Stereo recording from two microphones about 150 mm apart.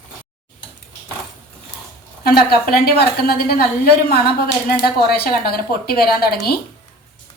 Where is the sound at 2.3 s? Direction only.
90° left.